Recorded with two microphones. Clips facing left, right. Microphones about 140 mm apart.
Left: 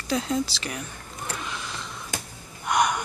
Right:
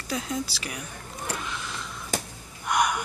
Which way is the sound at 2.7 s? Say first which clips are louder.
Left 2 dB; 5° right (ahead or behind).